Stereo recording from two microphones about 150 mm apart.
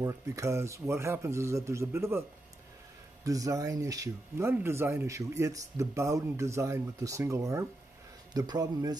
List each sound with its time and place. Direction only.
0.0 s speech: 20° right (ahead or behind)
3.3 s speech: 20° right (ahead or behind)